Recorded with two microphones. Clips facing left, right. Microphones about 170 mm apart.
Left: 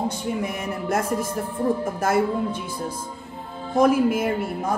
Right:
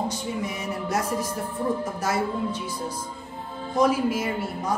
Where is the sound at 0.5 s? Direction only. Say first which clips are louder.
Left 2 dB; 55° left (ahead or behind).